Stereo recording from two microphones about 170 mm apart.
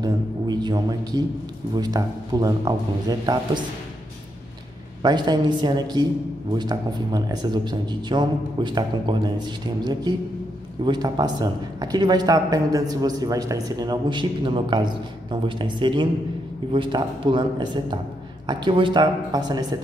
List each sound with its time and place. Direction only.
0.0 s a man's voice: 25° right (ahead or behind)
5.0 s speech: 25° right (ahead or behind)